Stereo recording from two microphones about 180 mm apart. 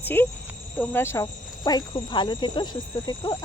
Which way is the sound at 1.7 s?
25° left (ahead or behind).